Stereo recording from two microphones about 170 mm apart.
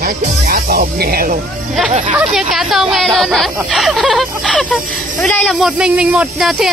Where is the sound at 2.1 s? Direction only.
Centre (ahead or behind).